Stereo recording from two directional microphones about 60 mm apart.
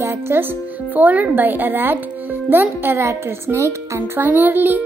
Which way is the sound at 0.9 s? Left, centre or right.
Right.